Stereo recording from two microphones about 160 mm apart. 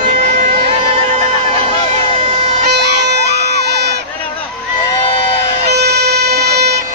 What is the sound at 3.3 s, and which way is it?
Crowd, 90° right.